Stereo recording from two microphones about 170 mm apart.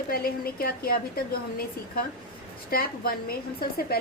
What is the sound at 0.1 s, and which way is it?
A woman's voice, 60° left (ahead or behind).